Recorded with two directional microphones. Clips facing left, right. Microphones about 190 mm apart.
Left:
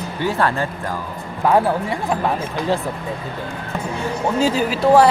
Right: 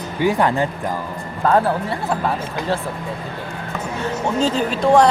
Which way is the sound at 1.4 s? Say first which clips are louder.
Left 1 dB; 15° left (ahead or behind).